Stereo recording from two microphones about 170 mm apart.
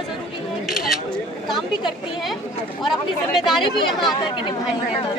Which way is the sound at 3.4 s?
Centre (ahead or behind).